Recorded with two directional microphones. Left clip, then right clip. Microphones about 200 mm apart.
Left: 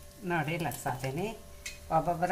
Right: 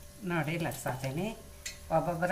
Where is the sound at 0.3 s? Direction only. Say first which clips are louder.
Left 2 dB; 15° left (ahead or behind).